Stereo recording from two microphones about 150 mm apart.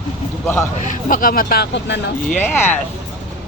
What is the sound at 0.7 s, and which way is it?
Speech, 60° left (ahead or behind).